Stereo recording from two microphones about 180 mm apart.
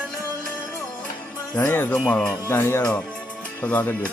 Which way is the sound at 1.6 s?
15° left (ahead or behind).